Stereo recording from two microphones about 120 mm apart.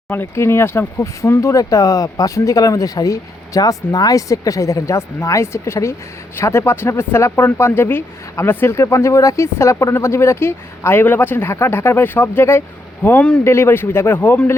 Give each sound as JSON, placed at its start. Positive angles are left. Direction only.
{"t": 0.1, "sound": "speech", "side_deg": 20}